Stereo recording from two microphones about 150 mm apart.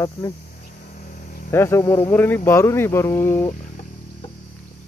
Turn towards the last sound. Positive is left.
turn(degrees=15)  # may be behind; listen again after turning